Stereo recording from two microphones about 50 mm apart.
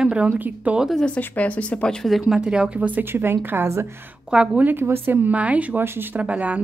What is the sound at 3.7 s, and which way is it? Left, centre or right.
Speech, right.